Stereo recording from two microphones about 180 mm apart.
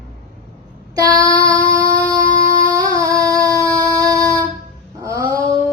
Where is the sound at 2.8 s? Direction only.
20° right (ahead or behind).